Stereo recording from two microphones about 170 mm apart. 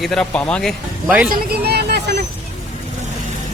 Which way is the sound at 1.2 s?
65° right (ahead or behind).